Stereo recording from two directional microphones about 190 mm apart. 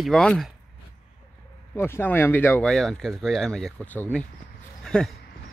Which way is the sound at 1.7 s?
10° left (ahead or behind).